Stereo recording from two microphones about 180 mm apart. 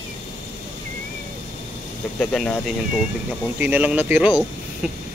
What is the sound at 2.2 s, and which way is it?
Speech, 5° left (ahead or behind).